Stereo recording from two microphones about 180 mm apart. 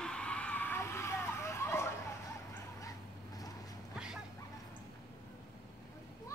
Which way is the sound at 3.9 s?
5° right (ahead or behind).